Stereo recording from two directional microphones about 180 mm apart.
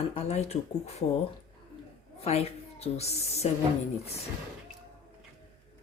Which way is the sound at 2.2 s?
35° left (ahead or behind).